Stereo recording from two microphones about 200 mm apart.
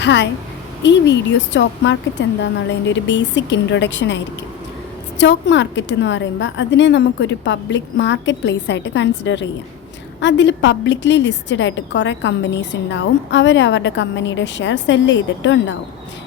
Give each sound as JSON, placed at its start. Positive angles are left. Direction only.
{"t": 0.0, "sound": "a woman's voice", "side_deg": 60}